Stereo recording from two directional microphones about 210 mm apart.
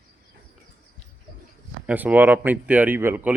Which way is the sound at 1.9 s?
5° right (ahead or behind).